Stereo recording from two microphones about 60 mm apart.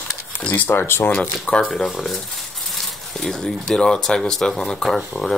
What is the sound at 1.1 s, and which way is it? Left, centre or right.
Speech, centre.